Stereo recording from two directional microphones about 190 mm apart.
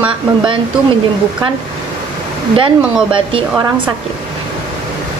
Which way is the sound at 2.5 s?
25° right (ahead or behind).